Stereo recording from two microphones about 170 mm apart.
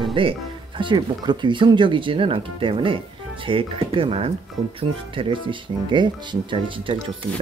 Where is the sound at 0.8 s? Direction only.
25° right (ahead or behind).